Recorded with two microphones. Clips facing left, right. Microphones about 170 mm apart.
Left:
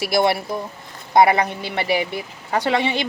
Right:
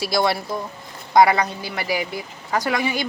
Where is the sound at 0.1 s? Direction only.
25° left (ahead or behind).